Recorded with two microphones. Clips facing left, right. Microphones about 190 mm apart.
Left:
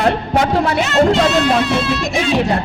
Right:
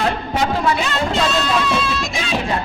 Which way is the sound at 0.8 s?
75° left (ahead or behind).